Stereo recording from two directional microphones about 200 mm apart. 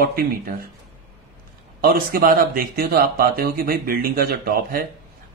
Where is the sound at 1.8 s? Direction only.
50° right (ahead or behind).